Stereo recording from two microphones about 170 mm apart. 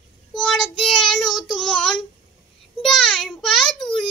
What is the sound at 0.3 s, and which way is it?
Child singing, 5° left (ahead or behind).